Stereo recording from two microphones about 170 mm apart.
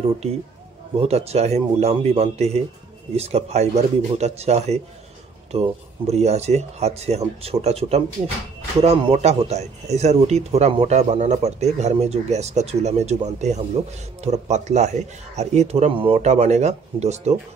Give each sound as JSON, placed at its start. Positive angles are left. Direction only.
{"t": 1.0, "sound": "a man's voice", "side_deg": -40}